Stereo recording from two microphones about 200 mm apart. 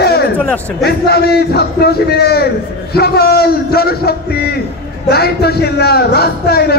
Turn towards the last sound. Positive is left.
turn(degrees=50)  # may be behind; listen again after turning